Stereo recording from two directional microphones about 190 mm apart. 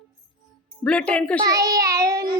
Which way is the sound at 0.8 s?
5° left (ahead or behind).